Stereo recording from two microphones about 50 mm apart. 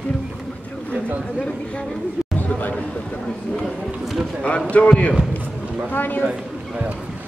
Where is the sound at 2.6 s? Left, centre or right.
Left.